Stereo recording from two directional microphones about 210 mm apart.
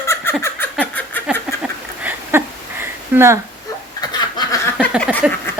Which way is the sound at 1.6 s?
10° right (ahead or behind).